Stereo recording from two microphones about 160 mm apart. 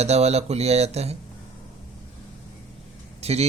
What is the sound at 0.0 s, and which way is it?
A man's voice, 40° right (ahead or behind).